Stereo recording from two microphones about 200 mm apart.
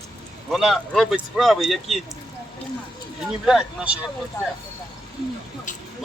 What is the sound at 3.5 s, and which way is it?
Speech, 5° right (ahead or behind).